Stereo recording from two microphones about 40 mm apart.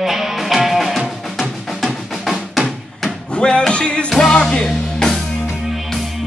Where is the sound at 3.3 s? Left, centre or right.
Left.